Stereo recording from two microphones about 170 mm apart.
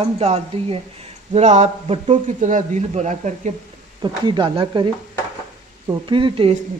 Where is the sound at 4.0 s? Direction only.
25° right (ahead or behind).